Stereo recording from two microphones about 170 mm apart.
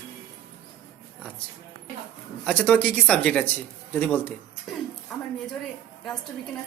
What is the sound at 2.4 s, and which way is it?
Speech, 5° left (ahead or behind).